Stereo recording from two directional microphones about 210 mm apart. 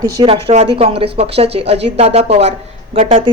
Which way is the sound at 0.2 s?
25° right (ahead or behind).